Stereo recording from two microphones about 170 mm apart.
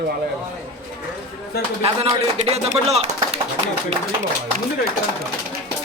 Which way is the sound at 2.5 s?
35° right (ahead or behind).